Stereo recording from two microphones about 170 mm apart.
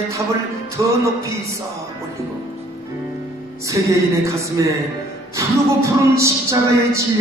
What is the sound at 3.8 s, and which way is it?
Music, 20° right (ahead or behind).